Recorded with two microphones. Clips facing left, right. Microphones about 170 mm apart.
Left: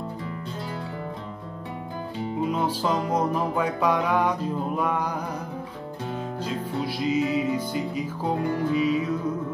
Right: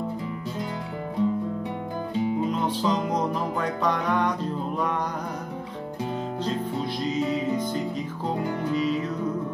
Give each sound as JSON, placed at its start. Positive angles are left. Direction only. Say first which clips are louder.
{"t": 2.6, "sound": "music", "louder": "even", "side_deg": 5}
{"t": 6.4, "sound": "music", "louder": "even", "side_deg": 10}